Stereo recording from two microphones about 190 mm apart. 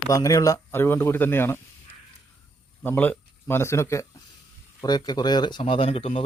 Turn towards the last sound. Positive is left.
turn(degrees=30)  # may be behind; listen again after turning